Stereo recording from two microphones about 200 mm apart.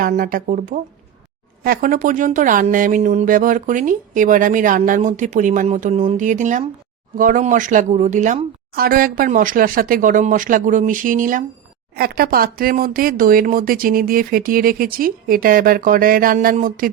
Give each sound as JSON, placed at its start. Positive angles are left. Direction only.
{"t": 0.0, "sound": "speech", "side_deg": -45}